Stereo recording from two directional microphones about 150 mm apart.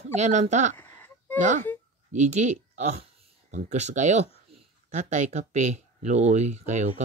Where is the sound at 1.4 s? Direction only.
55° right (ahead or behind).